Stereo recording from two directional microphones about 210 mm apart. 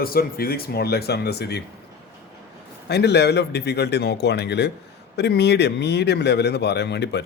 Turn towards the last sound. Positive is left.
turn(degrees=55)  # may be behind; listen again after turning